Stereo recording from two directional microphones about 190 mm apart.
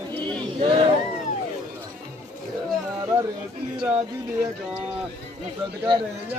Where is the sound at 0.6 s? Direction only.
25° right (ahead or behind).